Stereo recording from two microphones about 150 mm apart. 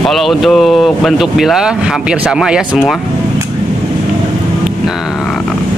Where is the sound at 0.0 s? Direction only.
Centre (ahead or behind).